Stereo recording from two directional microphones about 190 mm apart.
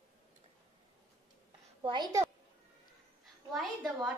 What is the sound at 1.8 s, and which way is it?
Speech, 25° right (ahead or behind).